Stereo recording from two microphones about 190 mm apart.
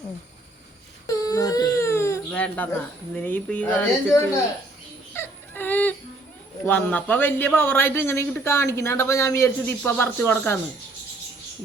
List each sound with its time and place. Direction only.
1.0 s baby cry: 20° left (ahead or behind)
3.2 s a man's voice: 10° left (ahead or behind)
5.1 s whimper: 10° left (ahead or behind)
6.7 s a man's voice: 10° left (ahead or behind)